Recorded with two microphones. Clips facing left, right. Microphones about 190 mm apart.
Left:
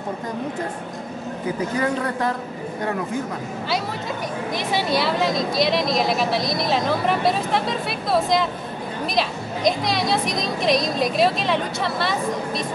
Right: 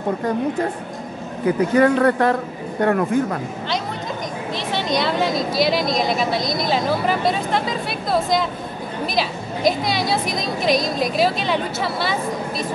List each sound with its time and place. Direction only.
1.8 s speech: 65° right (ahead or behind)
4.6 s a woman's voice: 10° left (ahead or behind)